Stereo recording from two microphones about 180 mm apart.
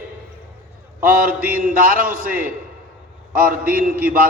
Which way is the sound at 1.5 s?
50° right (ahead or behind).